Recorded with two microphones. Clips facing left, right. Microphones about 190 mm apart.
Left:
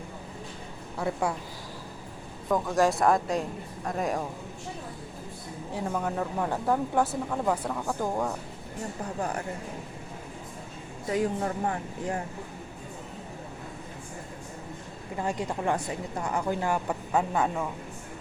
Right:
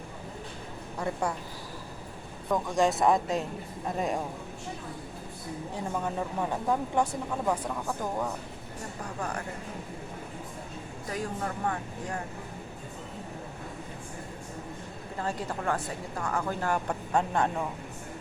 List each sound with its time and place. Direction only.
0.9 s speech: 5° left (ahead or behind)
2.5 s speech: centre (ahead or behind)
6.0 s speech: 5° right (ahead or behind)
6.5 s speech: 5° left (ahead or behind)
11.1 s speech: 25° left (ahead or behind)
15.2 s speech: 15° left (ahead or behind)